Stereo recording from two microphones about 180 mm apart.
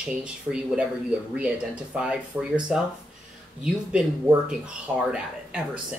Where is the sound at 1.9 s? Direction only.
5° right (ahead or behind).